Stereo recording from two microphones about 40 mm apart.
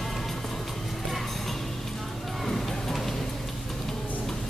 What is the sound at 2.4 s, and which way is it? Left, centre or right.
Music, centre.